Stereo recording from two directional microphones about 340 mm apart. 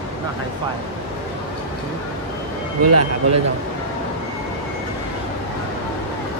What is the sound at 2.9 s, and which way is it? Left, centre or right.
Speech, right.